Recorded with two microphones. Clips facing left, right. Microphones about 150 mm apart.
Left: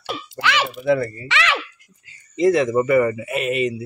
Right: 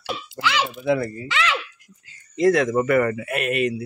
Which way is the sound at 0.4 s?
65° left (ahead or behind).